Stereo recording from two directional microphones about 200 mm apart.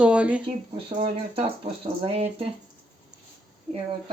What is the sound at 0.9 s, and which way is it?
Speech, 30° right (ahead or behind).